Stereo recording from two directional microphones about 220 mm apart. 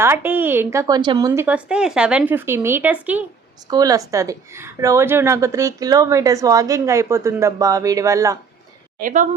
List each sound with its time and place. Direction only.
0.0 s a woman's voice: 10° right (ahead or behind)
9.0 s a woman's voice: 35° right (ahead or behind)